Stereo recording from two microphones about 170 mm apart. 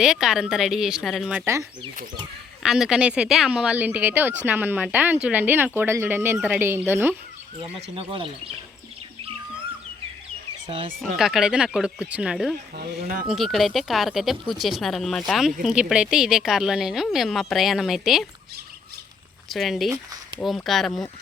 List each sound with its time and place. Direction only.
0.0 s speech: 5° right (ahead or behind)
2.6 s speech: 5° right (ahead or behind)
7.6 s speech: 30° right (ahead or behind)
10.7 s speech: 30° right (ahead or behind)
11.2 s speech: 5° right (ahead or behind)
12.7 s speech: 60° right (ahead or behind)
13.2 s speech: centre (ahead or behind)
19.5 s speech: centre (ahead or behind)